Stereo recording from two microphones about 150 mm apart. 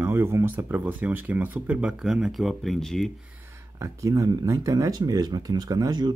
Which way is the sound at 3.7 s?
20° right (ahead or behind).